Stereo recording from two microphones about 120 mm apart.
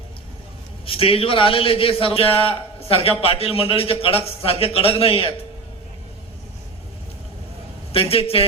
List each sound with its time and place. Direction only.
0.9 s a man's voice: 50° left (ahead or behind)
8.1 s a man's voice: 55° left (ahead or behind)